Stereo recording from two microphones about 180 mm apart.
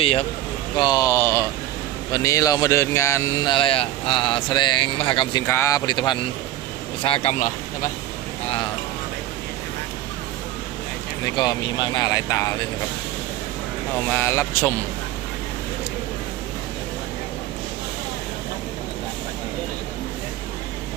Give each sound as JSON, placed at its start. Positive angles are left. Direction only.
{"t": 0.0, "sound": "speech", "side_deg": 30}
{"t": 0.8, "sound": "speech", "side_deg": 20}
{"t": 5.5, "sound": "speech", "side_deg": 15}
{"t": 8.4, "sound": "speech", "side_deg": 30}
{"t": 11.3, "sound": "speech", "side_deg": 25}
{"t": 13.9, "sound": "speech", "side_deg": 10}